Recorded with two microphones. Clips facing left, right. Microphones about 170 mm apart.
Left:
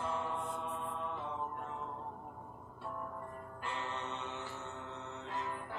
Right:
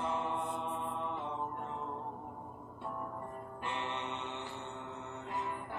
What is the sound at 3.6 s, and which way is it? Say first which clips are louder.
Mantra: right 2 dB; 20° right (ahead or behind).